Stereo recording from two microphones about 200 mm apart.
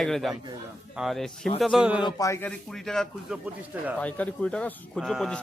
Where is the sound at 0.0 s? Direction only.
Centre (ahead or behind).